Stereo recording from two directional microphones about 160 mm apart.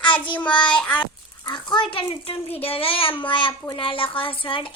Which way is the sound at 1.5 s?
25° left (ahead or behind).